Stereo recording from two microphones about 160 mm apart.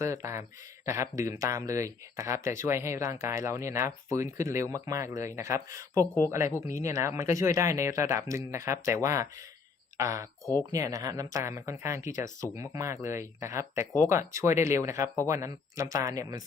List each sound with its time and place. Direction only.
0.0 s speech: 20° right (ahead or behind)